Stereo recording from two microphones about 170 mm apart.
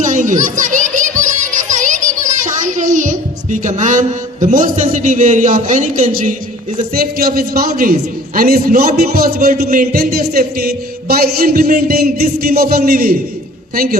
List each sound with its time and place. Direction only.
0.0 s children playing: 45° right (ahead or behind)
6.9 s a man's voice: 60° right (ahead or behind)